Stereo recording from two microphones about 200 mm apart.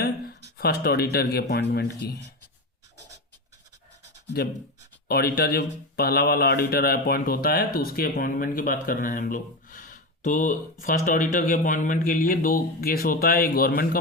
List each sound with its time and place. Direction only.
0.5 s speech: 50° left (ahead or behind)
5.0 s speech: 50° left (ahead or behind)